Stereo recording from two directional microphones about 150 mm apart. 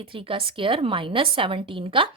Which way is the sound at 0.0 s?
35° right (ahead or behind).